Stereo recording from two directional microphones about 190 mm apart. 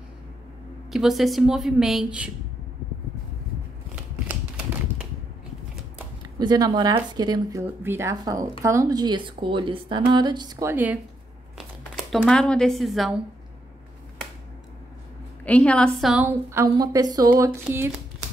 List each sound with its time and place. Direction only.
0.8 s a woman's voice: centre (ahead or behind)
4.3 s typewriter: 10° right (ahead or behind)
6.3 s speech: 20° right (ahead or behind)
11.5 s speech: centre (ahead or behind)
15.4 s a woman's voice: 5° left (ahead or behind)
16.3 s speech: 15° right (ahead or behind)
17.6 s speech: 10° right (ahead or behind)